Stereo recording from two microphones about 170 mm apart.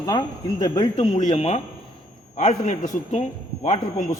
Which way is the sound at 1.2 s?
40° left (ahead or behind).